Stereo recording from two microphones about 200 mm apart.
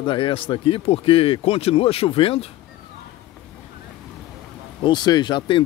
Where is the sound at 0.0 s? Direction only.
25° left (ahead or behind).